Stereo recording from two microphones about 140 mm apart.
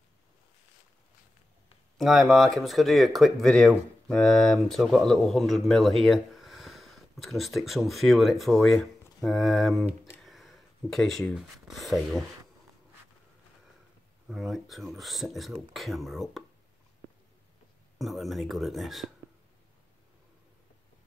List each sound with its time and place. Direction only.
2.0 s speech: centre (ahead or behind)
14.2 s speech: centre (ahead or behind)
17.9 s speech: centre (ahead or behind)